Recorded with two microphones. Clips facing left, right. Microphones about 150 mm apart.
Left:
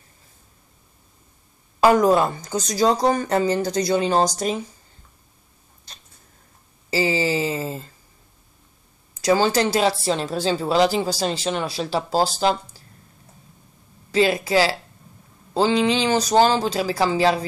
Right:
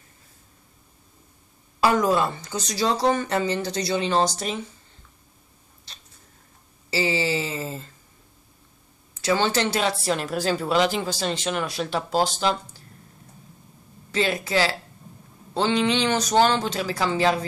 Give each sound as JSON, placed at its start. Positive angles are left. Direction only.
{"t": 1.8, "sound": "speech", "side_deg": 45}
{"t": 6.9, "sound": "a sound", "side_deg": 40}
{"t": 9.1, "sound": "speech", "side_deg": 40}
{"t": 14.1, "sound": "speech", "side_deg": 35}